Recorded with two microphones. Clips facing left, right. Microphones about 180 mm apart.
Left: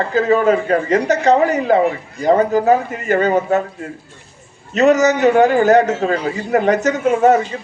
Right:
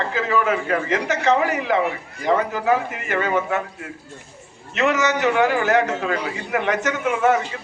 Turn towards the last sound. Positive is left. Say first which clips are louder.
# left 6 dB
turn(degrees=35)  # may be behind; listen again after turning